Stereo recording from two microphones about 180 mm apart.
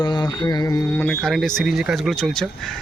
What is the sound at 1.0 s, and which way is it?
Speech, 5° left (ahead or behind).